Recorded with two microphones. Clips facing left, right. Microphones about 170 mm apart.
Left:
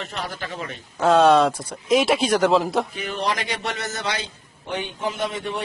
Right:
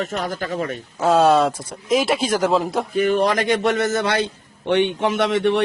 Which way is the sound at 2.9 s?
50° right (ahead or behind).